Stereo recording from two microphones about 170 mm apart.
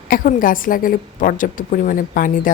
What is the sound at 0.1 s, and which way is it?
A woman's voice, 55° left (ahead or behind).